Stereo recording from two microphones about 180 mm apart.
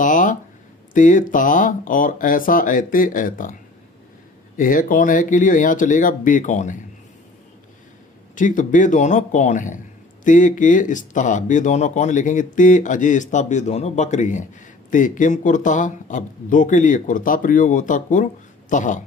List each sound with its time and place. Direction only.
0.0 s a sound: 45° left (ahead or behind)
0.9 s speech: 45° left (ahead or behind)
4.6 s speech: 50° left (ahead or behind)
8.4 s speech: 45° left (ahead or behind)